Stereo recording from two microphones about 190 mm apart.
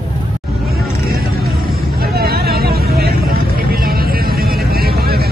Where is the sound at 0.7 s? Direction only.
50° right (ahead or behind).